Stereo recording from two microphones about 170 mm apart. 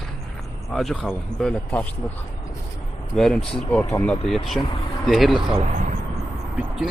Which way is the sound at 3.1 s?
Centre (ahead or behind).